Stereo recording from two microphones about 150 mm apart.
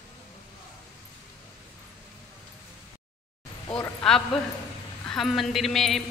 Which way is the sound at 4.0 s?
5° left (ahead or behind).